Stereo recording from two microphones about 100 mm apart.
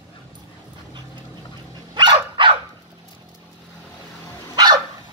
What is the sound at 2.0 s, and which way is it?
Dog, 55° right (ahead or behind).